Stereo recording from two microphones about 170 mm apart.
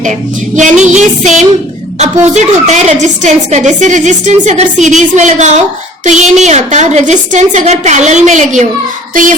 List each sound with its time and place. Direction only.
0.5 s a woman's voice: 45° right (ahead or behind)